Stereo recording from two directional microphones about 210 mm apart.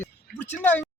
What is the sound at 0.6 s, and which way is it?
Speech, 10° left (ahead or behind).